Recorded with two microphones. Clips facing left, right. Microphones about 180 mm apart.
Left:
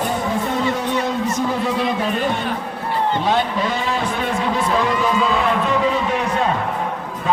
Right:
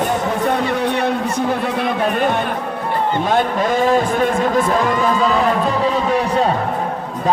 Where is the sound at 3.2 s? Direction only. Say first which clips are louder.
Right 2 dB; 50° right (ahead or behind).